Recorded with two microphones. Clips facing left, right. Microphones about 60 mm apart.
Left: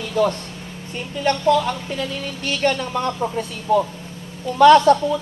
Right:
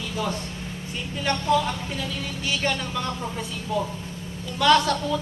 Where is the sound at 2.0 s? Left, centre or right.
Left.